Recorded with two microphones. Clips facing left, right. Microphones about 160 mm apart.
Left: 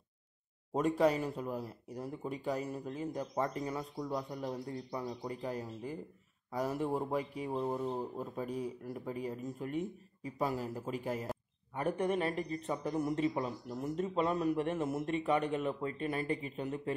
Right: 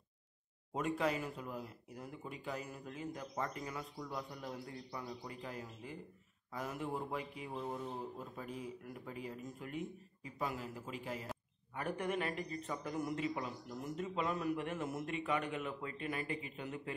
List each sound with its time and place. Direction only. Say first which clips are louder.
0.7 s speech: left 7 dB; 40° left (ahead or behind)
11.7 s speech: left 6 dB; 30° left (ahead or behind)